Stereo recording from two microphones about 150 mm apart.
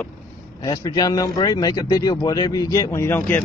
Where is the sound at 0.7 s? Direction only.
25° left (ahead or behind).